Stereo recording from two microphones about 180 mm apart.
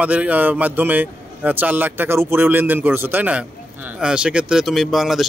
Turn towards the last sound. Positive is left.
turn(degrees=0)  # may be behind; listen again after turning